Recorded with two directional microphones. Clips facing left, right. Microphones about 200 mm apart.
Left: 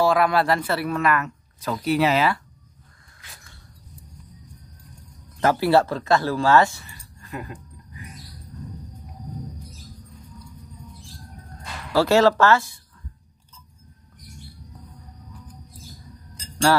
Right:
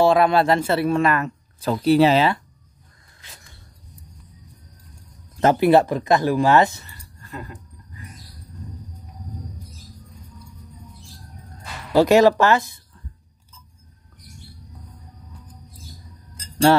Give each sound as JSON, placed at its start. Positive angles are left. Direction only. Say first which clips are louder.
{"t": 0.0, "sound": "speech", "louder": "right 3 dB", "side_deg": -25}
{"t": 5.4, "sound": "speech", "louder": "right 3 dB", "side_deg": -20}
{"t": 7.2, "sound": "a sound", "louder": "left 1 dB", "side_deg": 15}
{"t": 11.9, "sound": "speech", "louder": "right 3 dB", "side_deg": -15}